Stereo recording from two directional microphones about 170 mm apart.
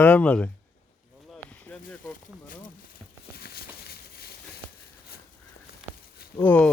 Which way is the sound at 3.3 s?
65° left (ahead or behind).